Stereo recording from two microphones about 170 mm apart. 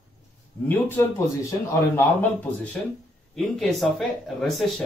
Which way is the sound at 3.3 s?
Centre (ahead or behind).